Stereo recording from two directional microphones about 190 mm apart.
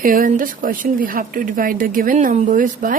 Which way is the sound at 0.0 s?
45° right (ahead or behind).